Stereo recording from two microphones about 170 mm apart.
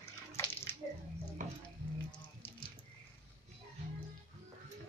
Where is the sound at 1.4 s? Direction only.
50° right (ahead or behind).